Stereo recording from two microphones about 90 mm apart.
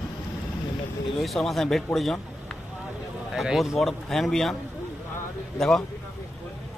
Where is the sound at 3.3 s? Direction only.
Centre (ahead or behind).